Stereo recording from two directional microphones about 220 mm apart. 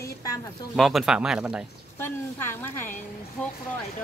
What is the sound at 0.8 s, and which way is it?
Speech, centre (ahead or behind).